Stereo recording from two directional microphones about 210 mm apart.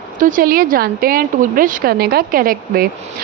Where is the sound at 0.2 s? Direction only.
40° right (ahead or behind).